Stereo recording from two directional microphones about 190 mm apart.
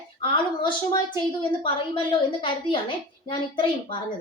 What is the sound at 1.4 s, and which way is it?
A woman's voice, 25° left (ahead or behind).